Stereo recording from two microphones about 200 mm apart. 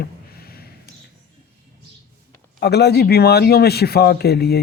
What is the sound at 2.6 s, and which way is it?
Speech, 55° left (ahead or behind).